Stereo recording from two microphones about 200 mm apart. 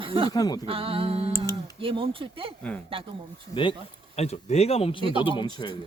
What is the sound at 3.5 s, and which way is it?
Speech, 25° left (ahead or behind).